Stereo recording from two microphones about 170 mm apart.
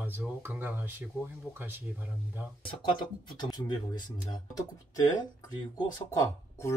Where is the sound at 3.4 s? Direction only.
25° left (ahead or behind).